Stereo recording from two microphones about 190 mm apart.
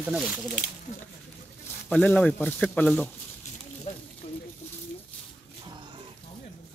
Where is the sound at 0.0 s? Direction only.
5° right (ahead or behind).